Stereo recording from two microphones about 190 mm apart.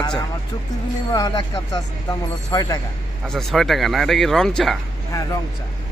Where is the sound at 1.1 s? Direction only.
20° left (ahead or behind).